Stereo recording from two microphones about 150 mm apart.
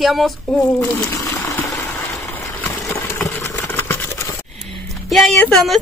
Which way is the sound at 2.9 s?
15° left (ahead or behind).